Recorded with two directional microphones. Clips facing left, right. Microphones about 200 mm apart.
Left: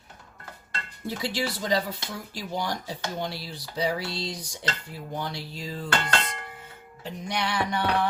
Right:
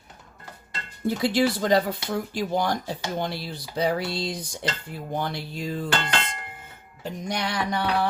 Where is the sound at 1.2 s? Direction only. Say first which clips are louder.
Right 7 dB; 55° right (ahead or behind).